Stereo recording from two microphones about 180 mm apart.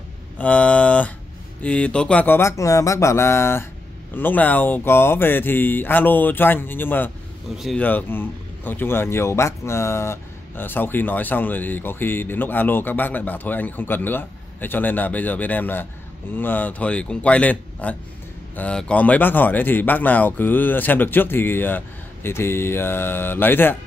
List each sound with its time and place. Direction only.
0.4 s speech: 5° left (ahead or behind)
7.5 s speech: centre (ahead or behind)
7.8 s speech: 10° left (ahead or behind)